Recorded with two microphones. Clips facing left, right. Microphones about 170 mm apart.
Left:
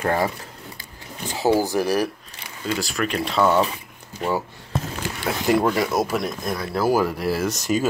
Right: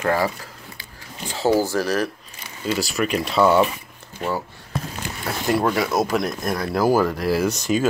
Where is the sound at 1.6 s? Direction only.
15° left (ahead or behind).